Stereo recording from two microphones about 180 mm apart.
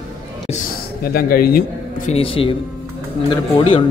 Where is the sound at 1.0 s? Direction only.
55° left (ahead or behind).